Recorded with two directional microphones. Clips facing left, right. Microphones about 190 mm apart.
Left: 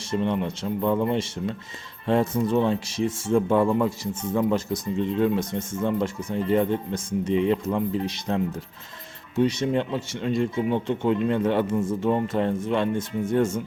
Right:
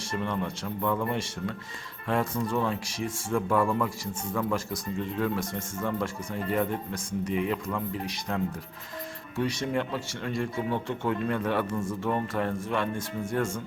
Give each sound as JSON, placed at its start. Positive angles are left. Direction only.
{"t": 0.0, "sound": "speech", "side_deg": 20}